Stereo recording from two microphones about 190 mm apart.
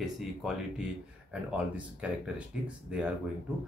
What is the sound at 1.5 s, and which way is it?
Speech, 5° right (ahead or behind).